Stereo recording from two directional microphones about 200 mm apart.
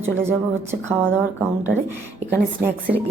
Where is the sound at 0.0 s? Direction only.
10° right (ahead or behind).